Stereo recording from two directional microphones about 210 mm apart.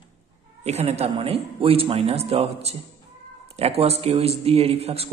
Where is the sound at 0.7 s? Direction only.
30° right (ahead or behind).